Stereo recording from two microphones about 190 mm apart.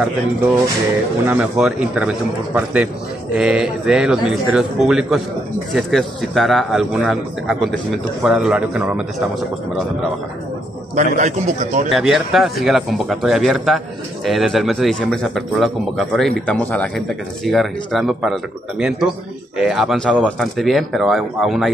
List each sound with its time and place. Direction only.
1.2 s a man's voice: 10° right (ahead or behind)
11.1 s a man's voice: 40° right (ahead or behind)
11.9 s a man's voice: centre (ahead or behind)